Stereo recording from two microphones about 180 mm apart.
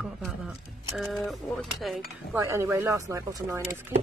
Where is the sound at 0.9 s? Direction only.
Centre (ahead or behind).